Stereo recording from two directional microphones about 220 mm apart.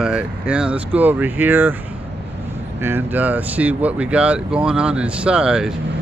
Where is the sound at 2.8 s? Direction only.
10° right (ahead or behind).